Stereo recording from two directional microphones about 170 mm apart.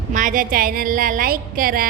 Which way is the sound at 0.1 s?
50° right (ahead or behind).